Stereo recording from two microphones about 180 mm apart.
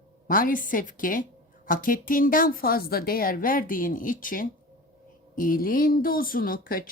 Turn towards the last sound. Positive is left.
turn(degrees=50)  # may be behind; listen again after turning